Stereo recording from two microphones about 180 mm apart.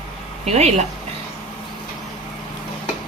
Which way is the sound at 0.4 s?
35° right (ahead or behind).